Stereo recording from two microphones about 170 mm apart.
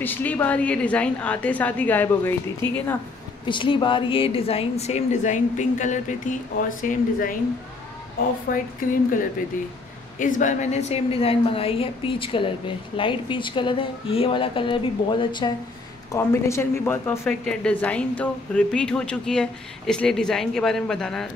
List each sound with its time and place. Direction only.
0.0 s a woman's voice: 10° left (ahead or behind)
3.4 s speech: 30° left (ahead or behind); by 9.0 s 55° left (ahead or behind)
10.1 s speech: 50° left (ahead or behind); by 15.5 s 30° left (ahead or behind)
16.1 s a woman's voice: 15° left (ahead or behind)